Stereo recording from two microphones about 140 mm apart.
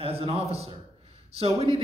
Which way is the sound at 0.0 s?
45° right (ahead or behind).